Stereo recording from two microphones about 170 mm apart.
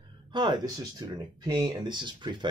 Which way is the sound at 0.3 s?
25° right (ahead or behind).